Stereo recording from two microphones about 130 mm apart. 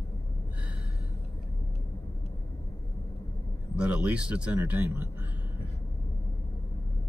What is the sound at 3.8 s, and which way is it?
A man's voice, 10° right (ahead or behind).